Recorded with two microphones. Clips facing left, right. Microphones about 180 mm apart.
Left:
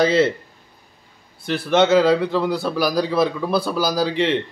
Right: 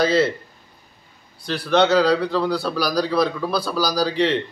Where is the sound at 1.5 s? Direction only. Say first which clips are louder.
Left 2 dB; 20° left (ahead or behind).